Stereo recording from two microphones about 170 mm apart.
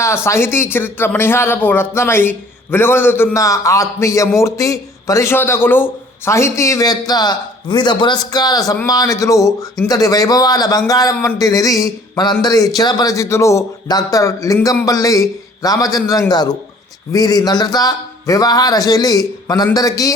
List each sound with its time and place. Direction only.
0.3 s a man's voice: 15° left (ahead or behind)